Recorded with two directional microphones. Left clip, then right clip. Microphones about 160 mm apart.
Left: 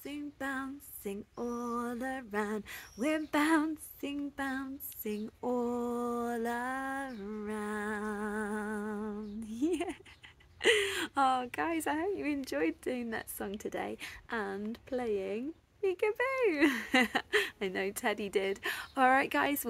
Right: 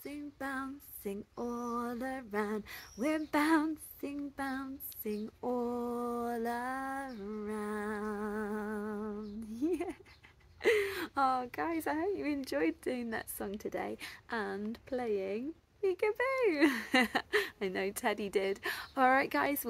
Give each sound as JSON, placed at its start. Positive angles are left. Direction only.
{"t": 0.0, "sound": "female singing", "side_deg": 15}
{"t": 1.0, "sound": "a woman's voice", "side_deg": 5}
{"t": 4.0, "sound": "female singing", "side_deg": 15}
{"t": 10.6, "sound": "speech", "side_deg": 25}
{"t": 12.0, "sound": "a woman's voice", "side_deg": 5}